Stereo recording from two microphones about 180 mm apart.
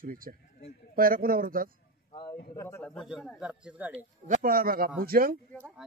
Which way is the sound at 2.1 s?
25° left (ahead or behind).